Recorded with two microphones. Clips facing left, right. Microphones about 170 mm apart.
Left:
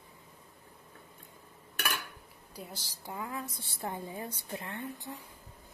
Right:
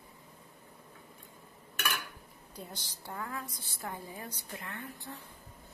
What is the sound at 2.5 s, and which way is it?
A woman's voice, 5° left (ahead or behind).